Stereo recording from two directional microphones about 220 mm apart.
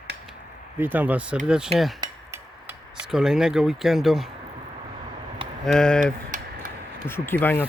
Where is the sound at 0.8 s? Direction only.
10° right (ahead or behind).